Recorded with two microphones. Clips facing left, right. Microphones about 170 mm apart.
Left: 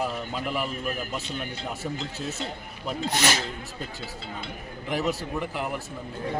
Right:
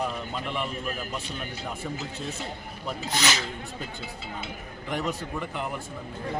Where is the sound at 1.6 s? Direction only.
5° right (ahead or behind).